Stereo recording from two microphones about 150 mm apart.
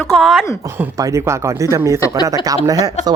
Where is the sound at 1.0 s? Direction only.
20° right (ahead or behind).